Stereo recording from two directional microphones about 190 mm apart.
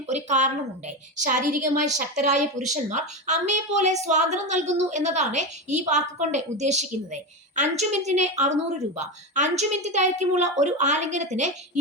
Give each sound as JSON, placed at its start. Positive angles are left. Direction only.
{"t": 0.1, "sound": "a woman's voice", "side_deg": -40}